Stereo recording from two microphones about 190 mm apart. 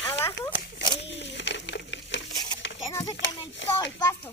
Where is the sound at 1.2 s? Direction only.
70° left (ahead or behind).